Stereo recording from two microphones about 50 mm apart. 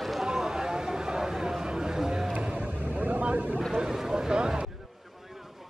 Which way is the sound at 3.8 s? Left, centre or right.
Centre.